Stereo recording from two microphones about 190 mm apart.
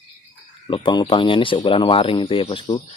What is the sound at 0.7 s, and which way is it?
Speech, 25° left (ahead or behind).